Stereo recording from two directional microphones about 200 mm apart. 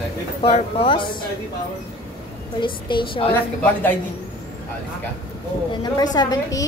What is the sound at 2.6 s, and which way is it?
Speech, 25° left (ahead or behind).